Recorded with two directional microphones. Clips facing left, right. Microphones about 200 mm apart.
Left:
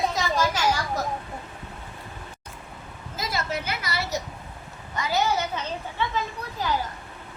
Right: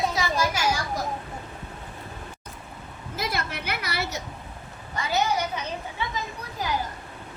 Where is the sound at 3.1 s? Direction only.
60° right (ahead or behind).